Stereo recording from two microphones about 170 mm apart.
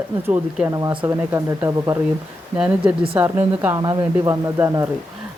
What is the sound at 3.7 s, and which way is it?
Speech, 20° right (ahead or behind).